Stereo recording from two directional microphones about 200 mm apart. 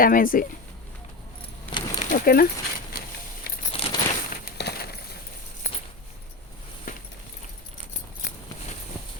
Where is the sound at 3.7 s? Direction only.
30° left (ahead or behind).